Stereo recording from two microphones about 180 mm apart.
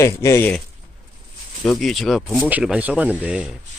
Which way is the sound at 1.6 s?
Centre (ahead or behind).